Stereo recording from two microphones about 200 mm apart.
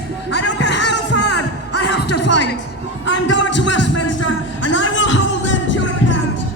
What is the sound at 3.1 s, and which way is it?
Music, 65° left (ahead or behind).